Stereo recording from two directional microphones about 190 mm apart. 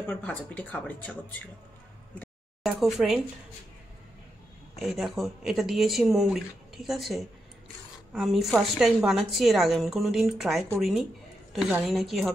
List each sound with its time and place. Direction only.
0.0 s speech: 10° left (ahead or behind)
2.1 s a sound: centre (ahead or behind)
4.7 s a woman's voice: centre (ahead or behind)